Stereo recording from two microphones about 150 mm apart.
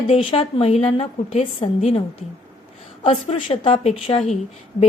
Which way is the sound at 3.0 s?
40° left (ahead or behind).